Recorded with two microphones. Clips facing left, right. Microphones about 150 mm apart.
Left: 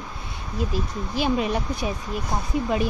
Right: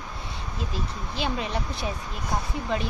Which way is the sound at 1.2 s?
15° left (ahead or behind).